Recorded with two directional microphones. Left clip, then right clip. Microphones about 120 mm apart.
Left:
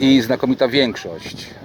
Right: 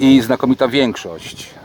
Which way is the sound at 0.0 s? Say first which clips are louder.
Right 3 dB; centre (ahead or behind).